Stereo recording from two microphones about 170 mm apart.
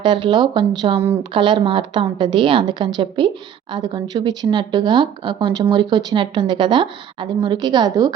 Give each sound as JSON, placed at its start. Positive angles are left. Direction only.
{"t": 0.0, "sound": "a woman's voice", "side_deg": -30}